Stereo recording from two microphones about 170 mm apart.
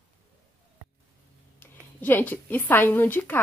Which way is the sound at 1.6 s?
10° left (ahead or behind).